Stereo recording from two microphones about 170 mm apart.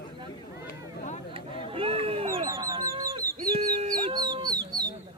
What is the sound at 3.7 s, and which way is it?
Chicken, 50° right (ahead or behind).